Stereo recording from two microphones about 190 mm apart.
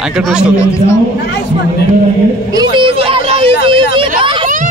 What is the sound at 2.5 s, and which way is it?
Speech, 25° right (ahead or behind).